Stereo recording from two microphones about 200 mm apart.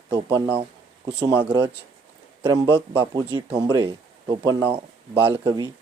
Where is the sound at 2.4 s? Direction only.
20° right (ahead or behind).